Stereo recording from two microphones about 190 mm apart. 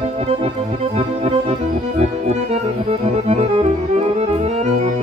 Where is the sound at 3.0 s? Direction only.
35° right (ahead or behind).